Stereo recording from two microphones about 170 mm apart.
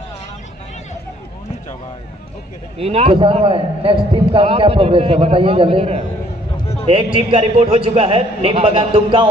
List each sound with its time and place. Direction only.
2.8 s a man's voice: 35° right (ahead or behind)
7.2 s a man's voice: 35° right (ahead or behind)